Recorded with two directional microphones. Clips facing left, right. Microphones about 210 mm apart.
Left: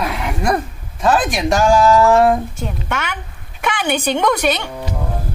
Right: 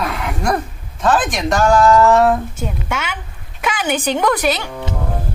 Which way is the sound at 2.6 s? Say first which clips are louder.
Even; 10° right (ahead or behind).